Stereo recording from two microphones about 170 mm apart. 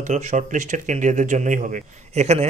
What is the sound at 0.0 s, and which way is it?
Speech, 45° right (ahead or behind).